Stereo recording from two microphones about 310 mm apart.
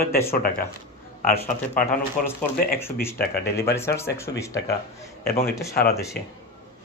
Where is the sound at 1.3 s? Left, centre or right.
Centre.